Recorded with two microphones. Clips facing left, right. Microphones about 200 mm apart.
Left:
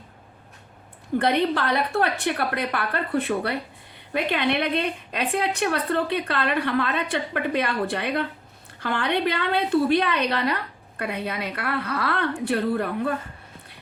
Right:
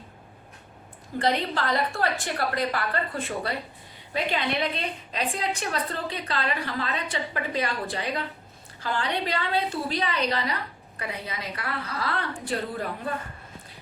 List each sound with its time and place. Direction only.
1.2 s a woman's voice: 60° left (ahead or behind)